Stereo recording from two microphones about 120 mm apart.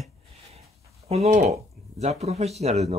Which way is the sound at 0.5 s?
60° right (ahead or behind).